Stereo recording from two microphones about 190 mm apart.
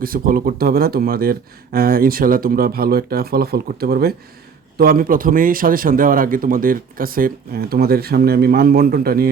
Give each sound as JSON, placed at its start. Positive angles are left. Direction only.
{"t": 0.0, "sound": "speech", "side_deg": -50}